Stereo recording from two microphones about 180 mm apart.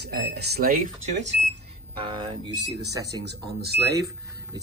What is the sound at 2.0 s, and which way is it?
Speech, 25° right (ahead or behind).